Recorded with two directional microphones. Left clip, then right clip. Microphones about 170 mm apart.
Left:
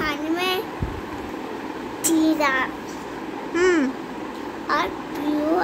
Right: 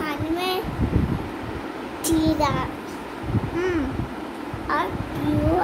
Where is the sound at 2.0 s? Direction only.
Centre (ahead or behind).